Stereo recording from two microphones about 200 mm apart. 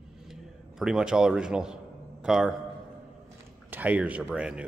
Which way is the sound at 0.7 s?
5° right (ahead or behind).